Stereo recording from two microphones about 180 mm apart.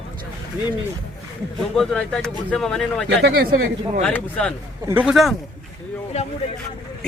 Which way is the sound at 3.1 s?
65° right (ahead or behind).